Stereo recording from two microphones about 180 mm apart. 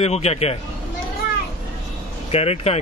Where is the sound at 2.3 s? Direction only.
35° left (ahead or behind).